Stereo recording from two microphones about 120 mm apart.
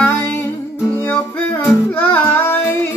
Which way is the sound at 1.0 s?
15° left (ahead or behind).